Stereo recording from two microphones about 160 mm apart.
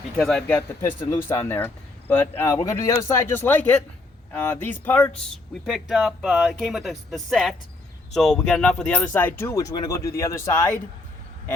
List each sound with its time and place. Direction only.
0.2 s speech: 5° left (ahead or behind); by 10.8 s 20° left (ahead or behind)